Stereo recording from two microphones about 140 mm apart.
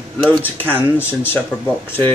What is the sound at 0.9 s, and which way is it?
Speech, 15° left (ahead or behind).